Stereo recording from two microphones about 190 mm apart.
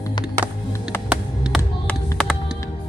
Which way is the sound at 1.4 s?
Centre (ahead or behind).